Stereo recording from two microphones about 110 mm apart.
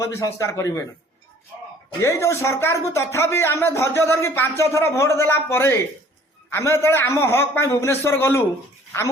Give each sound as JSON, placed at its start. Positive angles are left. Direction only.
{"t": 0.0, "sound": "speech", "side_deg": 30}
{"t": 2.0, "sound": "speech", "side_deg": 25}